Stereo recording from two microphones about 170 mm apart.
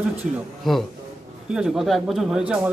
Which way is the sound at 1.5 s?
5° right (ahead or behind).